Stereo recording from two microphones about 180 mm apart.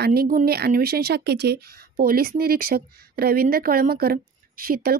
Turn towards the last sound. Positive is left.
turn(degrees=-60)  # may be behind; listen again after turning